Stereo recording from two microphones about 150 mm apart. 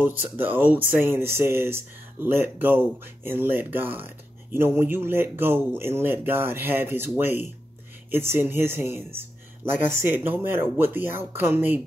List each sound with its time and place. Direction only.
0.0 s speech: 15° right (ahead or behind)